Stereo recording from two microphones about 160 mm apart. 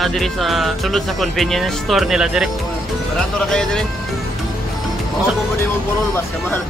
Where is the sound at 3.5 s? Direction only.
5° left (ahead or behind).